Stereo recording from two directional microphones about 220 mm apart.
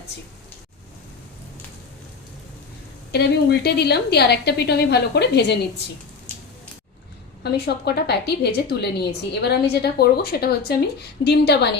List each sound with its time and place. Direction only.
3.1 s a woman's voice: 50° left (ahead or behind)
7.5 s a woman's voice: 45° left (ahead or behind)